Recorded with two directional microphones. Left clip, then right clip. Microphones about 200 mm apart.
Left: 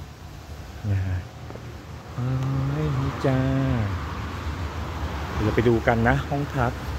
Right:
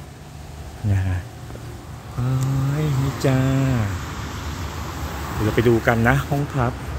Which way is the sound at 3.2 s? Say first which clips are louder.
Right 3 dB; 5° right (ahead or behind).